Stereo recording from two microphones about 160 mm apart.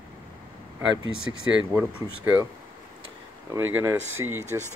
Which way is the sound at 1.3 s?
15° right (ahead or behind).